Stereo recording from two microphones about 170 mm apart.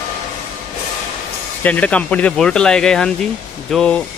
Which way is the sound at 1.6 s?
10° left (ahead or behind).